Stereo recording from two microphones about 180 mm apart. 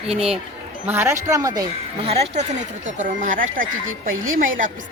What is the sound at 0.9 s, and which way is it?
Speech, 15° right (ahead or behind).